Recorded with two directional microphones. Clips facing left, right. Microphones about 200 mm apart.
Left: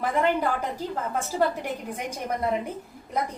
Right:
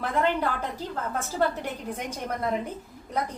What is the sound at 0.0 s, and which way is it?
A woman's voice, 10° left (ahead or behind).